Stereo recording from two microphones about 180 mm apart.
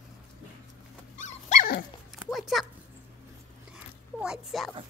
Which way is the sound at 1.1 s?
40° left (ahead or behind).